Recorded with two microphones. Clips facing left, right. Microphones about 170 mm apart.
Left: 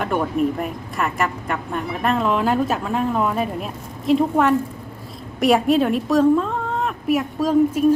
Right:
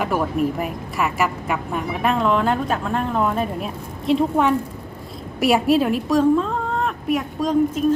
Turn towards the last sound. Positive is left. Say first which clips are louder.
# left 2 dB
turn(degrees=5)  # may be behind; listen again after turning